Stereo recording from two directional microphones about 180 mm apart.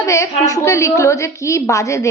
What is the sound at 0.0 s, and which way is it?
A woman's voice, 15° left (ahead or behind).